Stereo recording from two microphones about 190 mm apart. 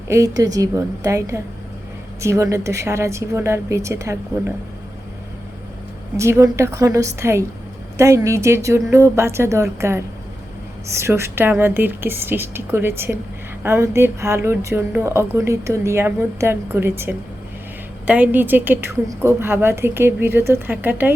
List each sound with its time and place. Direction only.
0.1 s a woman's voice: 15° right (ahead or behind)
6.1 s a woman's voice: 15° right (ahead or behind)